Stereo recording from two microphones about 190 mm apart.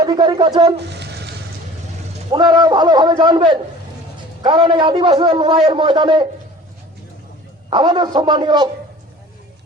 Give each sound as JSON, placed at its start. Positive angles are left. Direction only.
{"t": 0.0, "sound": "a man's voice", "side_deg": -20}
{"t": 0.8, "sound": "a sound", "side_deg": -65}
{"t": 2.3, "sound": "a man's voice", "side_deg": -25}
{"t": 7.7, "sound": "a man's voice", "side_deg": -25}